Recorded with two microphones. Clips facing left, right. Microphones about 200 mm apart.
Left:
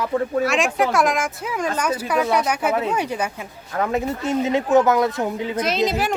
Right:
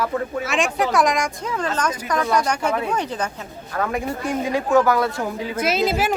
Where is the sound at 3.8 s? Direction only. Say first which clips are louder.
Left 2 dB; 20° left (ahead or behind).